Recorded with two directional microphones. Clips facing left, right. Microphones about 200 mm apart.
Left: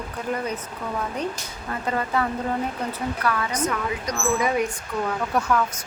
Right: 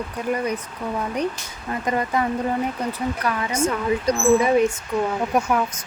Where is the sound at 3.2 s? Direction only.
20° right (ahead or behind).